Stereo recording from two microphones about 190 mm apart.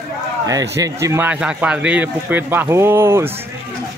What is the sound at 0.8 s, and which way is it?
A man's voice, 15° right (ahead or behind).